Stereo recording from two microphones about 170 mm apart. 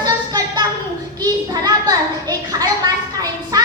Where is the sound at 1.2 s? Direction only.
20° right (ahead or behind).